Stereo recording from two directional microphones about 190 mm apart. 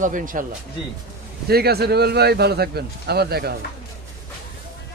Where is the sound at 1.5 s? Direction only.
55° right (ahead or behind).